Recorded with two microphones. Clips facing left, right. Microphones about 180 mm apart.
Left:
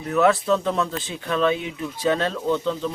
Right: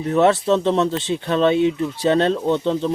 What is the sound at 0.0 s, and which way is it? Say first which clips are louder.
Speech: right 3 dB; 30° right (ahead or behind).